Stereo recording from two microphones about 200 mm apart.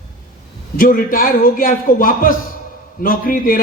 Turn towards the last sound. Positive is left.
turn(degrees=45)  # may be behind; listen again after turning